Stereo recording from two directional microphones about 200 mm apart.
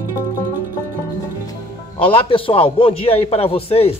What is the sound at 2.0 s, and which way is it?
A man's voice, 25° left (ahead or behind).